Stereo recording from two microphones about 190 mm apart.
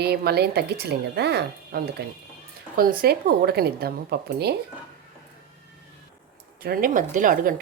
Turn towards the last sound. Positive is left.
turn(degrees=-45)  # may be behind; listen again after turning